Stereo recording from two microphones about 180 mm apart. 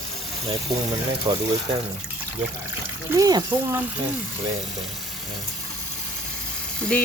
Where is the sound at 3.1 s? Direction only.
20° right (ahead or behind).